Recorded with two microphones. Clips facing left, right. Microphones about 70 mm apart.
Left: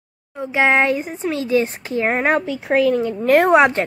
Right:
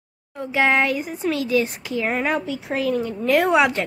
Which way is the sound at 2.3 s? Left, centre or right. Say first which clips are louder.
Left 6 dB; left.